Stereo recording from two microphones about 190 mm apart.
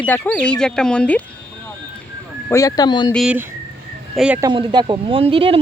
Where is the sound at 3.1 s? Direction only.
5° right (ahead or behind).